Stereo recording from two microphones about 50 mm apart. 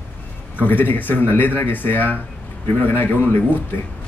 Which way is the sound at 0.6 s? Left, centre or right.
Left.